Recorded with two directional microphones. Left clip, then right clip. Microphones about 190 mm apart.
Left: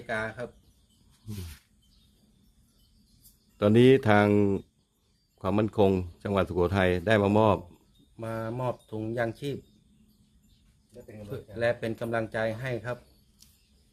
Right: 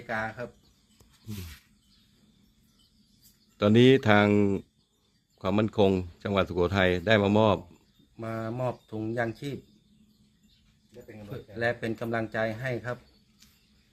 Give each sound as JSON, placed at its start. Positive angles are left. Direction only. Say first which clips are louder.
{"t": 0.1, "sound": "speech", "louder": "even", "side_deg": 20}
{"t": 3.6, "sound": "speech", "louder": "even", "side_deg": 0}
{"t": 8.1, "sound": "speech", "louder": "even", "side_deg": 15}
{"t": 11.3, "sound": "speech", "louder": "left 2 dB", "side_deg": 15}